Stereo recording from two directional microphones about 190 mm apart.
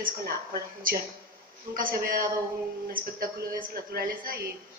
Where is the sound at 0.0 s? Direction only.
50° right (ahead or behind).